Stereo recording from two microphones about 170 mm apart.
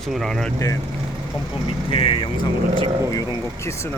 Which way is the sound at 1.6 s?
30° left (ahead or behind).